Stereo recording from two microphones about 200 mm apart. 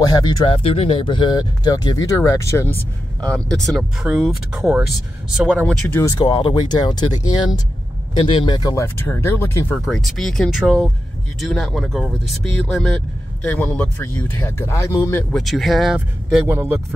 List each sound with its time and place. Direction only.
0.1 s speech: 25° left (ahead or behind)
9.8 s speech: centre (ahead or behind)
15.3 s speech: centre (ahead or behind)
16.4 s speech: 10° right (ahead or behind)